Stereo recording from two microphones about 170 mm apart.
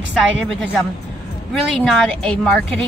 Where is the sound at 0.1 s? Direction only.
Centre (ahead or behind).